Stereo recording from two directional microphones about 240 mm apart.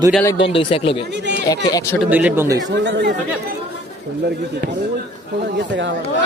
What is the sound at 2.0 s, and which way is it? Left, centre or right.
Speech, centre.